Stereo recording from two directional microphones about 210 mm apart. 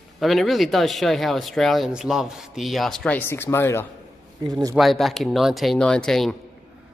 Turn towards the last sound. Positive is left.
turn(degrees=0)  # may be behind; listen again after turning